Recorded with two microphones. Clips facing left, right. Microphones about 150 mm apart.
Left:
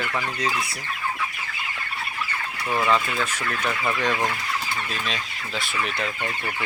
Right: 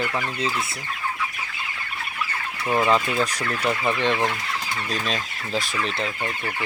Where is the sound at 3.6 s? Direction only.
25° right (ahead or behind).